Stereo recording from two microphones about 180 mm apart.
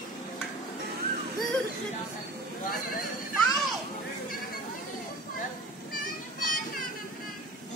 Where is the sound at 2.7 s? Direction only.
55° left (ahead or behind).